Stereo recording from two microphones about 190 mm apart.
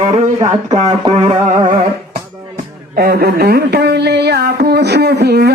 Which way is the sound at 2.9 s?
55° right (ahead or behind).